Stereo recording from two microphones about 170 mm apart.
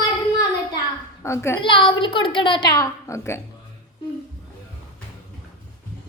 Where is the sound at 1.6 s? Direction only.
30° left (ahead or behind).